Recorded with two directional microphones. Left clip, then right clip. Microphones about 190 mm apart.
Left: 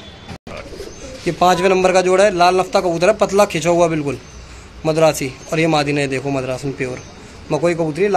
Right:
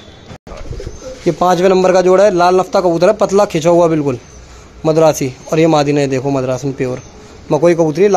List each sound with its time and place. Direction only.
1.2 s a man's voice: 40° right (ahead or behind)